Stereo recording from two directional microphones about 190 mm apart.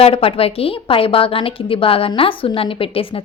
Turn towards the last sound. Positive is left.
turn(degrees=30)  # may be behind; listen again after turning